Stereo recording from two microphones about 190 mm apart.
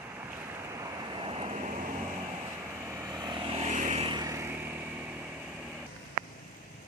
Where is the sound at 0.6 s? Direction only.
15° right (ahead or behind); by 1.7 s 35° right (ahead or behind).